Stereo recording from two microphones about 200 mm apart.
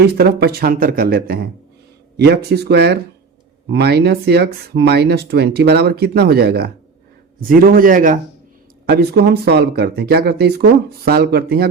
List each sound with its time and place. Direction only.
0.0 s speech: 55° right (ahead or behind)
8.9 s speech: 55° right (ahead or behind)